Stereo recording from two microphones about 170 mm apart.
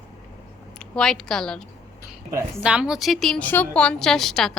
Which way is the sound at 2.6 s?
5° right (ahead or behind).